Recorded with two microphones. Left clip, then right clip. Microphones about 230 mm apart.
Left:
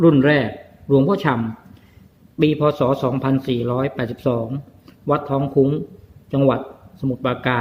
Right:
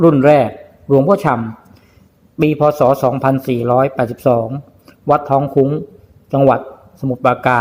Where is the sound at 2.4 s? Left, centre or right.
Centre.